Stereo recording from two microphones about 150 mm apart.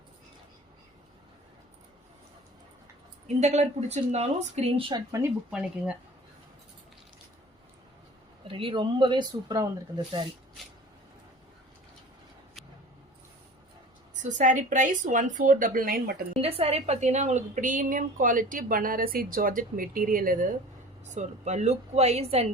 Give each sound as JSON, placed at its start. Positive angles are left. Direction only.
{"t": 3.4, "sound": "a woman's voice", "side_deg": -50}
{"t": 5.5, "sound": "speech", "side_deg": -5}
{"t": 8.4, "sound": "speech", "side_deg": -35}
{"t": 14.2, "sound": "a woman's voice", "side_deg": -55}
{"t": 16.3, "sound": "a woman's voice", "side_deg": -40}
{"t": 21.0, "sound": "a woman's voice", "side_deg": -50}